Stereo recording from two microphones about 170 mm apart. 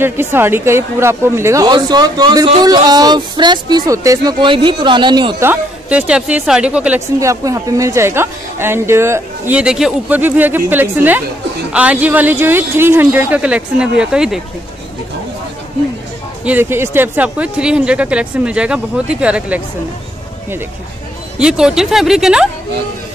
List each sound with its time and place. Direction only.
0.0 s speech: 15° right (ahead or behind)
5.4 s speech: 10° right (ahead or behind)
7.2 s speech: 20° right (ahead or behind)
16.4 s speech: 10° right (ahead or behind)
21.4 s speech: 5° right (ahead or behind)